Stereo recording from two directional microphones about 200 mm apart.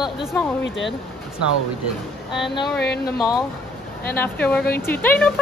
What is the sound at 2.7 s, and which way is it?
Speech, 55° left (ahead or behind).